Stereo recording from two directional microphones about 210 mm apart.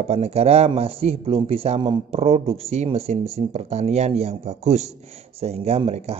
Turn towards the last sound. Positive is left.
turn(degrees=-30)  # may be behind; listen again after turning